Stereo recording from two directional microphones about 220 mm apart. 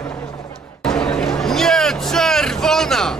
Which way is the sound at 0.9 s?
5° left (ahead or behind).